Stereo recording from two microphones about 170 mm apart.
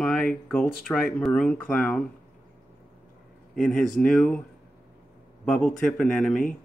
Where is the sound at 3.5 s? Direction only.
Centre (ahead or behind).